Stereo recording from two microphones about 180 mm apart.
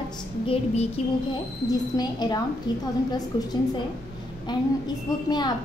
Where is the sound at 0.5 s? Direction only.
35° left (ahead or behind).